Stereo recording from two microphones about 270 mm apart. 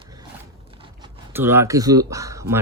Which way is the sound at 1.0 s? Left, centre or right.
Centre.